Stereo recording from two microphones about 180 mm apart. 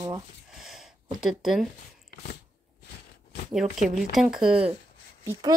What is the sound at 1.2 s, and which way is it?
Speech, 5° right (ahead or behind).